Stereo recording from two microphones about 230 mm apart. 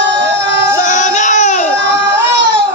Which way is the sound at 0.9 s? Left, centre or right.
Left.